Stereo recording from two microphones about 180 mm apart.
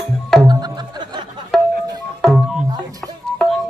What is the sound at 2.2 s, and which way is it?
Music, centre (ahead or behind).